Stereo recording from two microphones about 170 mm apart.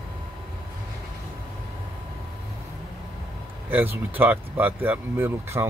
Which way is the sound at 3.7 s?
10° right (ahead or behind).